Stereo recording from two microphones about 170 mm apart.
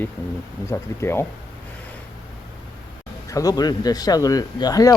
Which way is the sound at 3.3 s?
20° left (ahead or behind).